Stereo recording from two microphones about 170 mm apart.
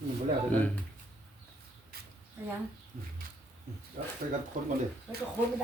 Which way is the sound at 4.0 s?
60° right (ahead or behind).